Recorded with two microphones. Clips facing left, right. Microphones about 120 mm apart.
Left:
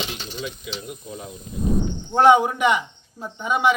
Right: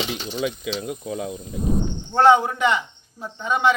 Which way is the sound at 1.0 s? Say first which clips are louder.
Right 7 dB; 90° right.